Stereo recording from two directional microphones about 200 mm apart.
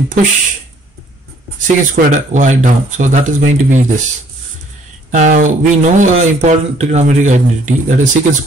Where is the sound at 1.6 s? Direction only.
40° right (ahead or behind).